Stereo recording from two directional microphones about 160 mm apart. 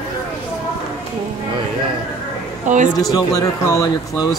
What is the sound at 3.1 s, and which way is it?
Speech, 20° left (ahead or behind).